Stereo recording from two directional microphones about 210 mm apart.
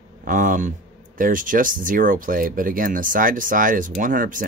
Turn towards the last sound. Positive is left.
turn(degrees=-40)  # may be behind; listen again after turning